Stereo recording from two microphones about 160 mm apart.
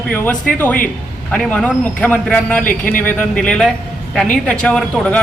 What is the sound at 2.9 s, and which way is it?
A man's voice, 10° left (ahead or behind).